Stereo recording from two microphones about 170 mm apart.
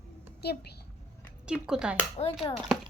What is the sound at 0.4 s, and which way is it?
Speech, 70° left (ahead or behind).